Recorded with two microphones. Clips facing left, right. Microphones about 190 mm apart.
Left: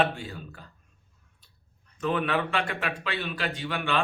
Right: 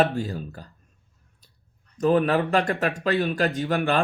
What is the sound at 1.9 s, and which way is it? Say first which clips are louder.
Speech: right 7 dB; 40° right (ahead or behind).